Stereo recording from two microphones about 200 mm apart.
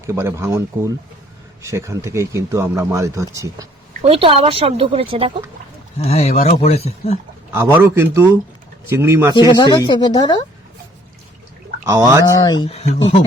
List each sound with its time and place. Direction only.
0.0 s speech: 15° right (ahead or behind)
4.0 s speech: 25° right (ahead or behind)
6.0 s speech: 30° left (ahead or behind)
7.5 s speech: 10° right (ahead or behind)
9.3 s speech: 20° left (ahead or behind)
11.9 s speech: 15° right (ahead or behind)
12.2 s speech: 20° left (ahead or behind)
12.6 s speech: 30° left (ahead or behind)